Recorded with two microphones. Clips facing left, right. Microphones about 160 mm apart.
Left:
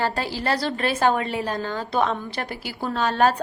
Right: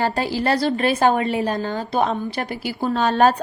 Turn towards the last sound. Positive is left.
turn(degrees=-20)  # may be behind; listen again after turning